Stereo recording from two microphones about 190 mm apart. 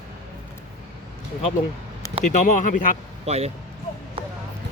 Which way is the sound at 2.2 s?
40° left (ahead or behind).